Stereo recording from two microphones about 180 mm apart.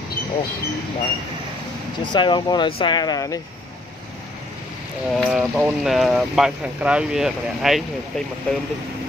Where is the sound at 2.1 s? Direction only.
25° left (ahead or behind).